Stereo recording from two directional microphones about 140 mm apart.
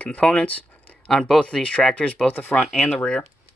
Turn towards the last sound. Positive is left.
turn(degrees=5)  # may be behind; listen again after turning